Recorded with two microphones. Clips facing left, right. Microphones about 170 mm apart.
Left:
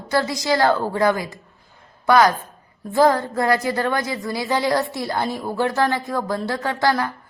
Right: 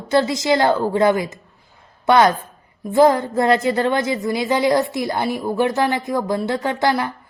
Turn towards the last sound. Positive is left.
turn(degrees=-20)  # may be behind; listen again after turning